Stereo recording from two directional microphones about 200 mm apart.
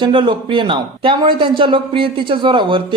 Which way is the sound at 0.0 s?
25° right (ahead or behind).